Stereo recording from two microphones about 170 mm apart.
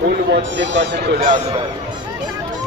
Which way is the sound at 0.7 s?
80° right.